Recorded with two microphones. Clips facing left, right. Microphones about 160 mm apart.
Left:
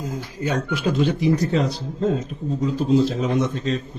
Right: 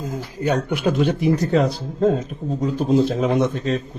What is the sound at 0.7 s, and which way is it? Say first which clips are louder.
Speech: right 2 dB; 55° right (ahead or behind).